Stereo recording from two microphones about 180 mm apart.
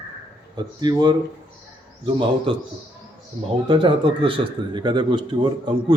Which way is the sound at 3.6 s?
25° right (ahead or behind).